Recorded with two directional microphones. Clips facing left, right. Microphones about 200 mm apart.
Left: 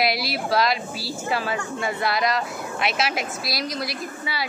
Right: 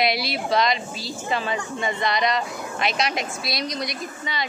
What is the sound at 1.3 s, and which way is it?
A woman's voice, 5° left (ahead or behind).